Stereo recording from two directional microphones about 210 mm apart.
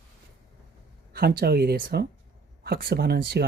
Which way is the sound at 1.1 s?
50° right (ahead or behind).